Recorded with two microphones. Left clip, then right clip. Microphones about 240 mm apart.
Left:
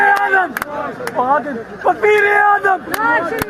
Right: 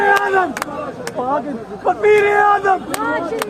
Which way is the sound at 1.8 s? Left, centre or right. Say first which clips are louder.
Left 1 dB; left.